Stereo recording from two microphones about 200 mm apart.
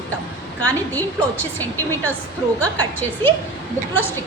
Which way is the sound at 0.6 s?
10° left (ahead or behind).